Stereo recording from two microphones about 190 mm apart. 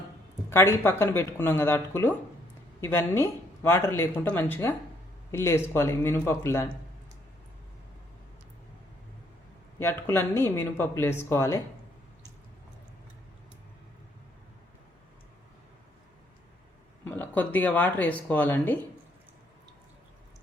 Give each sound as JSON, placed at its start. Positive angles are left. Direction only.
{"t": 0.5, "sound": "speech", "side_deg": 15}
{"t": 9.7, "sound": "speech", "side_deg": 15}
{"t": 17.0, "sound": "speech", "side_deg": 10}